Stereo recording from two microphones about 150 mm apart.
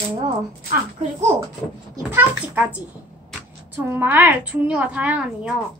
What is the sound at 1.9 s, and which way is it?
Speech, 15° right (ahead or behind).